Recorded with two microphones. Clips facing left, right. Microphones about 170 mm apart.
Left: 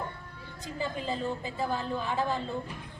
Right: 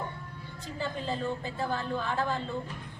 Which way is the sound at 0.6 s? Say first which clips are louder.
Left 1 dB; 10° left (ahead or behind).